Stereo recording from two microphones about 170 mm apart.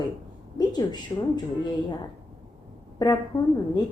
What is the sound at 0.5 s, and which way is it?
Speech, 25° left (ahead or behind).